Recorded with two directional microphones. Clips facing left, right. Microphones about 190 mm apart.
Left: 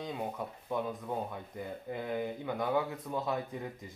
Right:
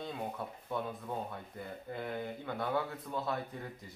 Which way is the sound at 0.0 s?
15° left (ahead or behind).